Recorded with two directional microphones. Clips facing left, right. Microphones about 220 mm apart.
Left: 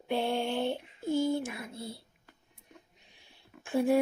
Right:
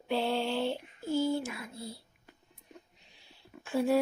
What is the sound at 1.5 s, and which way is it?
Speech, 25° left (ahead or behind).